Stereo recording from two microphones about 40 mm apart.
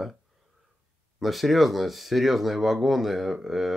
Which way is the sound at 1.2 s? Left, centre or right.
Centre.